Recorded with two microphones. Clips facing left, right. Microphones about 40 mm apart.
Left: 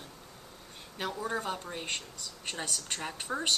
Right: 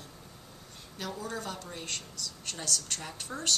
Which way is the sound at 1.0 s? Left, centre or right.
Left.